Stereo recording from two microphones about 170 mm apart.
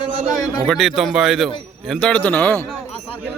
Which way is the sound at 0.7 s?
Centre (ahead or behind).